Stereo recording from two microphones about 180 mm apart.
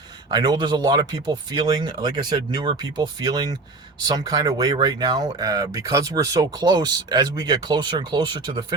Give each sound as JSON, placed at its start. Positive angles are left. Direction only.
{"t": 0.3, "sound": "speech", "side_deg": -25}